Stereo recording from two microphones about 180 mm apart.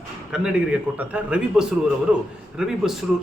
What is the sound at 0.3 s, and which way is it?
A man's voice, 5° right (ahead or behind).